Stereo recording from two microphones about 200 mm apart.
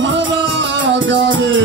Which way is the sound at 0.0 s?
65° right (ahead or behind).